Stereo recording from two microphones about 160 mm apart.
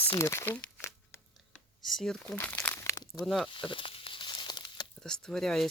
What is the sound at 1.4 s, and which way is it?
Computer keyboard, centre (ahead or behind).